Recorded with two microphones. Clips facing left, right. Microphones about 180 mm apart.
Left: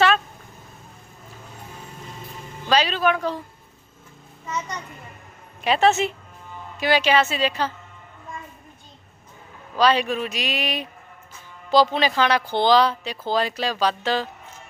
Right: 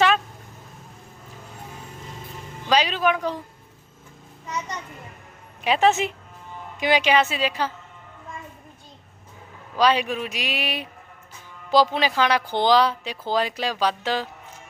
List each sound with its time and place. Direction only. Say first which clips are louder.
2.6 s speech: left 1 dB; 15° right (ahead or behind)
5.6 s speech: left 1 dB; 10° right (ahead or behind)
9.7 s speech: left 1 dB; 10° right (ahead or behind)